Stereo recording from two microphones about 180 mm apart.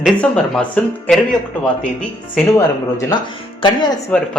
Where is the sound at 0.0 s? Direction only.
5° left (ahead or behind).